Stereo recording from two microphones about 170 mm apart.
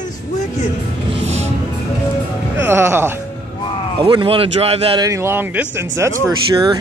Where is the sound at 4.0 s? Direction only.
30° right (ahead or behind).